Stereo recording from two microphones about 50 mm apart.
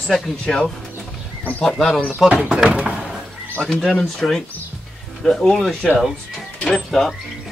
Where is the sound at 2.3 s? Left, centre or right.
Right.